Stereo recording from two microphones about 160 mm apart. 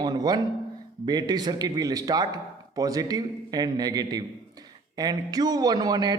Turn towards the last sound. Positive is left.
turn(degrees=-25)  # may be behind; listen again after turning